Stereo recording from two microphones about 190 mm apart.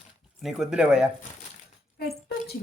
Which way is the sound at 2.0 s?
55° left (ahead or behind).